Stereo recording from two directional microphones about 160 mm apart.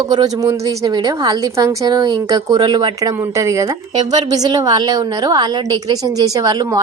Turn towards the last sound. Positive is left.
turn(degrees=-25)  # may be behind; listen again after turning